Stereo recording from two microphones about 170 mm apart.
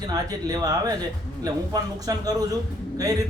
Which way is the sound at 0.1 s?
20° right (ahead or behind).